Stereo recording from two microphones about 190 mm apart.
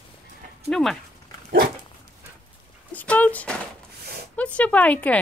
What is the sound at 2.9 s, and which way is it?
Dog, 10° left (ahead or behind).